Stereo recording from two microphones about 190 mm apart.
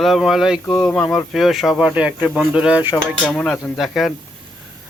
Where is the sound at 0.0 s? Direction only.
Centre (ahead or behind).